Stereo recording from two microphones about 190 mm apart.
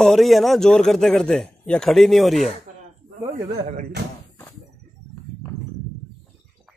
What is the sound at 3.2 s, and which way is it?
Speech, 35° right (ahead or behind).